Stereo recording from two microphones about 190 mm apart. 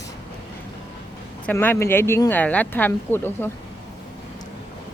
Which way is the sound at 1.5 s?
10° left (ahead or behind).